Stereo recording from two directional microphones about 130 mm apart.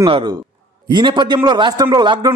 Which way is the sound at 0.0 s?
35° right (ahead or behind).